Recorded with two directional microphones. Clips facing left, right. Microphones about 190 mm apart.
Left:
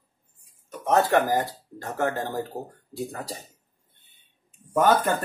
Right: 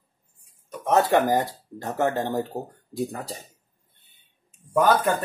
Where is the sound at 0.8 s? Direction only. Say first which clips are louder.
Right 1 dB; 20° right (ahead or behind).